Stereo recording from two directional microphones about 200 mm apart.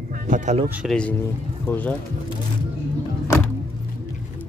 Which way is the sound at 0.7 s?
5° left (ahead or behind).